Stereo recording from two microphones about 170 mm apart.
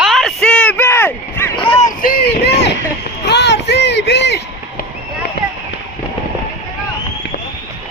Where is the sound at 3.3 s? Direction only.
85° left.